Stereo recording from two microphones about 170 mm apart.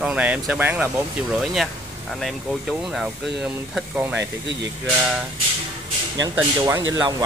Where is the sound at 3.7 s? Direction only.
10° right (ahead or behind).